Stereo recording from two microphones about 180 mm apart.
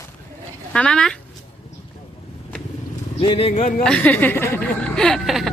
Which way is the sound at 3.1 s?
30° left (ahead or behind).